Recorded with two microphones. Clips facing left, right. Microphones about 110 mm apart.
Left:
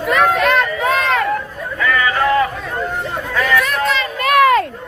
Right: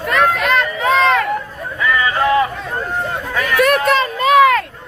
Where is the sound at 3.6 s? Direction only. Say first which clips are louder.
Right 5 dB; 55° right (ahead or behind).